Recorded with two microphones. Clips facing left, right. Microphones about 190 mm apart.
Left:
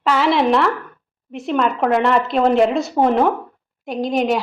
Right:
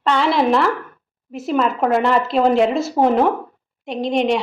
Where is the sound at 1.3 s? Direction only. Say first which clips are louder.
Even; centre (ahead or behind).